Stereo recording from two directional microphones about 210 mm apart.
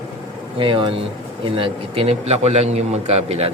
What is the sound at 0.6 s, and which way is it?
A man's voice, 25° right (ahead or behind).